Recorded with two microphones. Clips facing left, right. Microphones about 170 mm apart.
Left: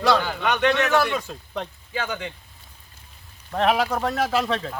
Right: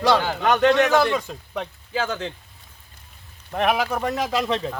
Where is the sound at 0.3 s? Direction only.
35° right (ahead or behind).